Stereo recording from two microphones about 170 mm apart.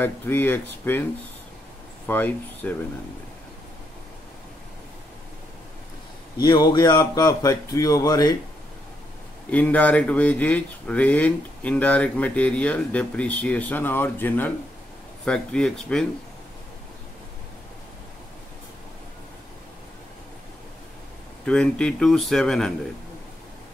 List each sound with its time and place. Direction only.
0.0 s speech: 10° left (ahead or behind)
2.0 s speech: 10° left (ahead or behind)
6.4 s speech: 25° left (ahead or behind)
9.5 s speech: 10° left (ahead or behind)
21.5 s speech: 5° left (ahead or behind)